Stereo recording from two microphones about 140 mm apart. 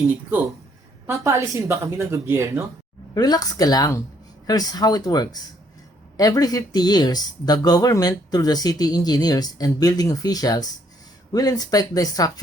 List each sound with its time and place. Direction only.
1.0 s speech: 20° right (ahead or behind)
3.2 s speech: 30° left (ahead or behind)